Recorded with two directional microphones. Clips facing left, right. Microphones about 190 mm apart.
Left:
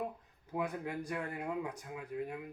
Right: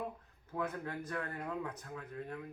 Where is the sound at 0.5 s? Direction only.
15° left (ahead or behind).